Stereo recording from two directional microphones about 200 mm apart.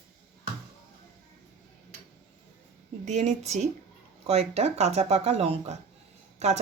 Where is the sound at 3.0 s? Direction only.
35° right (ahead or behind).